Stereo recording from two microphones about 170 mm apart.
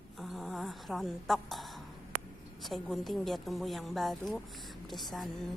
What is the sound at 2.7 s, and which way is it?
A woman's voice, centre (ahead or behind).